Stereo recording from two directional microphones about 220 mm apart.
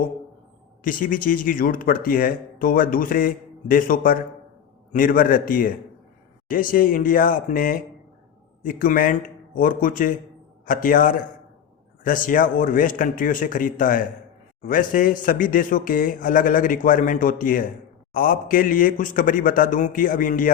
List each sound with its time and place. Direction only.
0.9 s speech: 40° left (ahead or behind)